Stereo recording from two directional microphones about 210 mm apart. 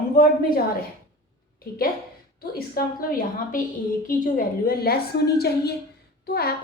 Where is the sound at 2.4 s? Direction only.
45° left (ahead or behind).